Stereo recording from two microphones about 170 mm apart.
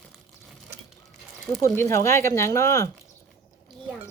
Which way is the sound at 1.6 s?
15° left (ahead or behind).